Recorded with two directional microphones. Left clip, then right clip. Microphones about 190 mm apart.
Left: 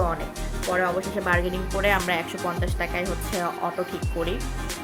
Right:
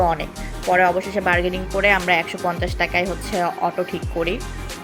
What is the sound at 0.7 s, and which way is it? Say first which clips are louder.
Speech: right 8 dB; 25° right (ahead or behind).